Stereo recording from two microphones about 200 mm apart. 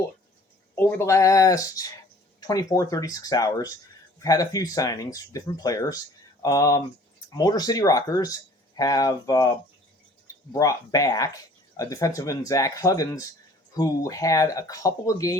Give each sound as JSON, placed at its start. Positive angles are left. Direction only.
{"t": 0.8, "sound": "speech", "side_deg": 10}